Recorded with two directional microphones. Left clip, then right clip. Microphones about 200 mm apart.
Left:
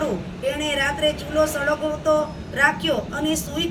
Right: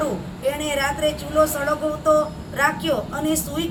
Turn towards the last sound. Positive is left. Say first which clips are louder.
# right 1 dB
turn(degrees=15)  # may be behind; listen again after turning